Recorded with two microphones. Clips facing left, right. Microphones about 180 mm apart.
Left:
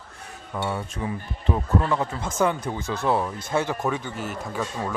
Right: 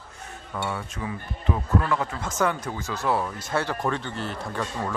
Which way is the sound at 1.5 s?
30° left (ahead or behind).